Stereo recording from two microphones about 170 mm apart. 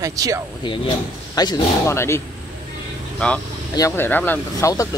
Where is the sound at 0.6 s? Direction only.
25° left (ahead or behind).